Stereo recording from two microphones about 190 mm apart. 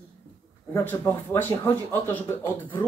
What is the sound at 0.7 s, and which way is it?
Speech, 10° left (ahead or behind).